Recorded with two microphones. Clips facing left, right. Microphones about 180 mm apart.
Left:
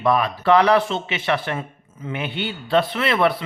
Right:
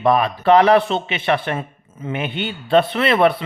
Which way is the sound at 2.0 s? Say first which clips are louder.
Right 3 dB; 20° right (ahead or behind).